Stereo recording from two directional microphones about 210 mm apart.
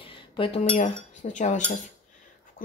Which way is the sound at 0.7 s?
35° left (ahead or behind).